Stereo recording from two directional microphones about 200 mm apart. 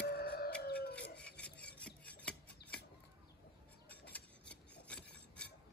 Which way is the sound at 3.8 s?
10° left (ahead or behind).